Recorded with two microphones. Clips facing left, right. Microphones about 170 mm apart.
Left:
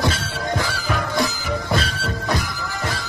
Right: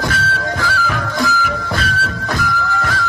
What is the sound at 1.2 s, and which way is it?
Music, 25° left (ahead or behind).